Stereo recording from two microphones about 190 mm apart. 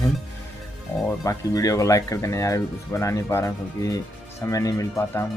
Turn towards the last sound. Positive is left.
turn(degrees=15)  # may be behind; listen again after turning